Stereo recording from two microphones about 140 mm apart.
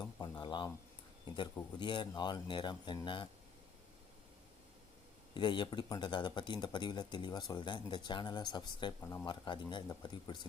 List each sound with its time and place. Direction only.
0.0 s a sound: 30° left (ahead or behind)
1.8 s speech: 35° left (ahead or behind)
5.3 s speech: 35° left (ahead or behind)
9.2 s speech: 35° left (ahead or behind)